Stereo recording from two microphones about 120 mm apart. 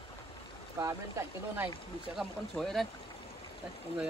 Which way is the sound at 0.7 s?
25° right (ahead or behind).